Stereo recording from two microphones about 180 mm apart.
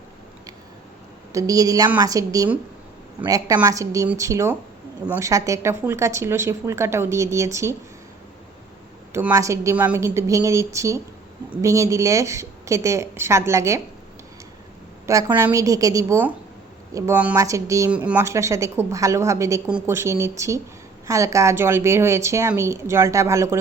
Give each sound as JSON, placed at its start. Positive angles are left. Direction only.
{"t": 1.3, "sound": "a woman's voice", "side_deg": -20}
{"t": 9.1, "sound": "a woman's voice", "side_deg": -15}
{"t": 15.0, "sound": "a woman's voice", "side_deg": -10}